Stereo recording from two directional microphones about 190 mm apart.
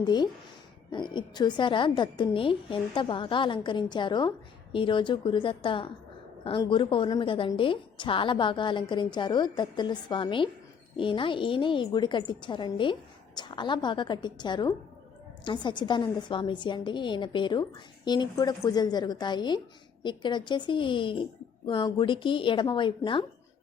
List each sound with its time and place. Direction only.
0.0 s a woman's voice: 20° left (ahead or behind)